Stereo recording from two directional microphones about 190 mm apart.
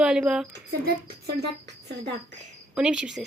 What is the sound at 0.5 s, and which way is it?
Speech, 60° right (ahead or behind).